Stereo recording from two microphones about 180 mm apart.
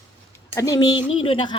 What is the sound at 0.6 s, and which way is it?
Speech, 20° left (ahead or behind).